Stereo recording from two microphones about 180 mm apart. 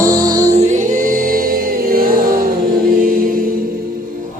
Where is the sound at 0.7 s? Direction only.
45° right (ahead or behind).